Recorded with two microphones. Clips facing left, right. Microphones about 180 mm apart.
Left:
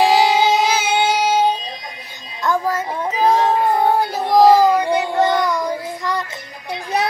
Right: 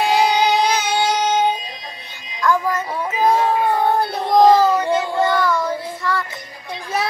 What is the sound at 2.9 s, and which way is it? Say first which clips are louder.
Child singing: left 1 dB; 20° left (ahead or behind).